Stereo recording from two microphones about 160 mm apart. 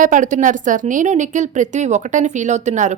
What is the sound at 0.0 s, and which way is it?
A woman's voice, 55° right (ahead or behind).